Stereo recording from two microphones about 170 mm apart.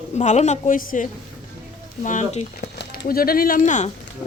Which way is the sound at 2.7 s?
60° left (ahead or behind).